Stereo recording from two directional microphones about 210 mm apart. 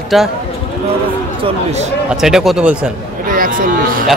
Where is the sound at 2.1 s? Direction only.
Centre (ahead or behind).